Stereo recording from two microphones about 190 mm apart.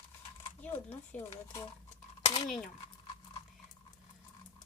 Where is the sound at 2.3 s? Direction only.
25° left (ahead or behind).